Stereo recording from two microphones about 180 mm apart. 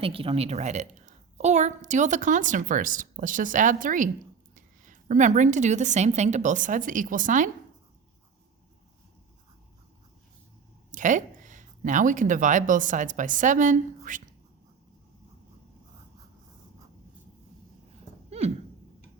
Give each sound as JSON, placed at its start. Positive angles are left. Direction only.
{"t": 0.0, "sound": "a woman's voice", "side_deg": -30}
{"t": 10.9, "sound": "speech", "side_deg": -45}
{"t": 18.3, "sound": "a sound", "side_deg": -35}